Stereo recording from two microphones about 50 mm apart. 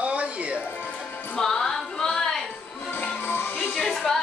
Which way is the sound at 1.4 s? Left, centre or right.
Centre.